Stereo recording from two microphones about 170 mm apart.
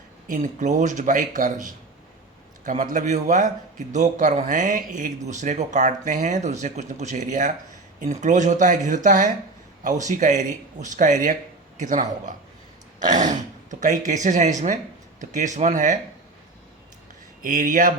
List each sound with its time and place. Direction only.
0.3 s a man's voice: 50° right (ahead or behind)
17.4 s a man's voice: 50° right (ahead or behind)